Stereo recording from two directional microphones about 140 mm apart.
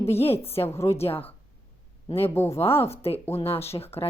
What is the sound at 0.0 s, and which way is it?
Speech, 45° left (ahead or behind).